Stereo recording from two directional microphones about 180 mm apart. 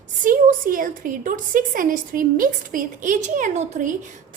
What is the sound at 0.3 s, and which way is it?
A woman's voice, 50° right (ahead or behind).